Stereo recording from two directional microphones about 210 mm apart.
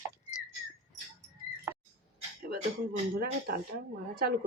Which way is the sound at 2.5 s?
45° right (ahead or behind).